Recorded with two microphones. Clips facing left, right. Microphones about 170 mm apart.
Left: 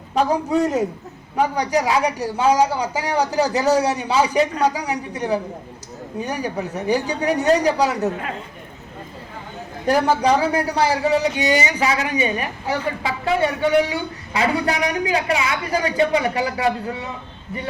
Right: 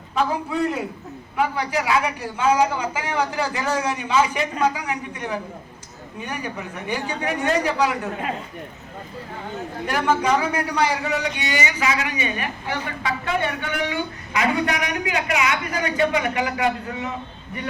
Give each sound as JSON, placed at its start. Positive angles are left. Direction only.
{"t": 0.1, "sound": "a man's voice", "side_deg": 40}
{"t": 9.8, "sound": "a man's voice", "side_deg": 35}
{"t": 14.3, "sound": "a man's voice", "side_deg": 30}